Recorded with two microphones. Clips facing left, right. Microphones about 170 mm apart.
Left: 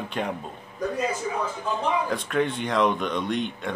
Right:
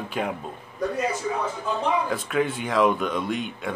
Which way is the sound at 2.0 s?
5° right (ahead or behind).